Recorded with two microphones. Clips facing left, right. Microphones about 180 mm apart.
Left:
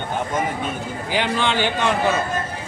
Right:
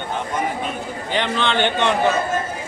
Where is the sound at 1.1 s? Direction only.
10° left (ahead or behind).